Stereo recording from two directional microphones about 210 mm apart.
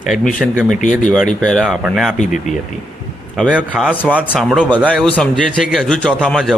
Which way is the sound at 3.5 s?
5° right (ahead or behind).